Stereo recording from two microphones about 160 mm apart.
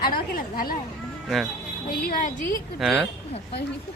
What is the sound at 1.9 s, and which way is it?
Speech, 65° left (ahead or behind).